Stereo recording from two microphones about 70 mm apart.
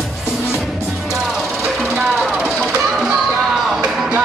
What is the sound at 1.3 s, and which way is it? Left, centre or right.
Music, centre.